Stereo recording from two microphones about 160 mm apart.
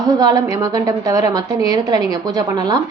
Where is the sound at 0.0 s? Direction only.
25° right (ahead or behind).